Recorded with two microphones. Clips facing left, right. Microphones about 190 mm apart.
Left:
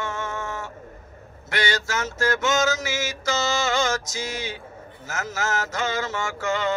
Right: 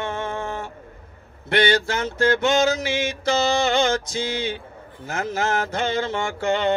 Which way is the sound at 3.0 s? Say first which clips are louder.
Right 4 dB; 60° right (ahead or behind).